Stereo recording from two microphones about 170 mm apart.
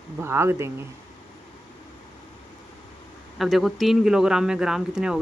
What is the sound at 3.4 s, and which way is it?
Speech, centre (ahead or behind).